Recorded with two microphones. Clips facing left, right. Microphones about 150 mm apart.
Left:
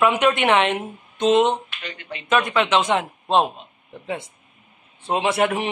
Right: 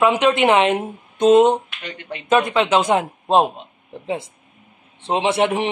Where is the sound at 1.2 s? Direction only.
35° right (ahead or behind).